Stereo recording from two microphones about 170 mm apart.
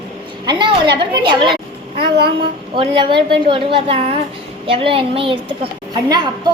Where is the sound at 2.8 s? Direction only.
30° right (ahead or behind).